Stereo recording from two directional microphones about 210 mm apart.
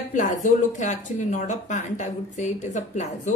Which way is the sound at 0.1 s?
35° left (ahead or behind).